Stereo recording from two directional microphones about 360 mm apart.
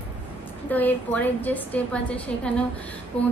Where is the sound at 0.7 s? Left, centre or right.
Centre.